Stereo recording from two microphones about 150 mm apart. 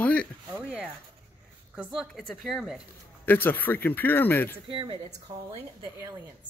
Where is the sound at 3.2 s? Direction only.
10° left (ahead or behind).